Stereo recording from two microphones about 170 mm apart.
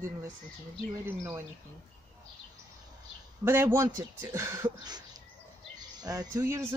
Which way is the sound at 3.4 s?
15° right (ahead or behind).